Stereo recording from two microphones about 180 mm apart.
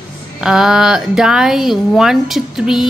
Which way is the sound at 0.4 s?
5° right (ahead or behind).